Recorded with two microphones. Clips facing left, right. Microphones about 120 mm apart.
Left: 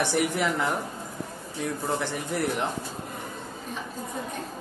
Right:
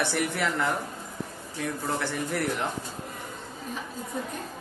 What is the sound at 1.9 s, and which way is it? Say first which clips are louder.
Speech: right 1 dB; 20° left (ahead or behind).